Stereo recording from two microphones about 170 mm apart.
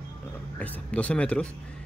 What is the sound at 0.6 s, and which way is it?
Speech, 10° left (ahead or behind).